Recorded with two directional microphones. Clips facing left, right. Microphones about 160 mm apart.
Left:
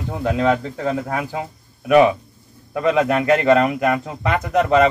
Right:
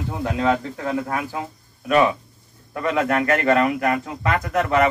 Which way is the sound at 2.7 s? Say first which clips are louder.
Left 4 dB; 20° left (ahead or behind).